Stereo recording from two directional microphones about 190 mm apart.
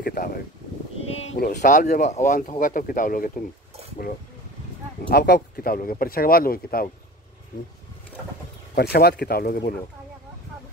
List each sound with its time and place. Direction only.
0.0 s a sound: 50° left (ahead or behind)
1.3 s speech: 40° left (ahead or behind)
5.1 s speech: 55° left (ahead or behind)
8.7 s speech: 55° left (ahead or behind)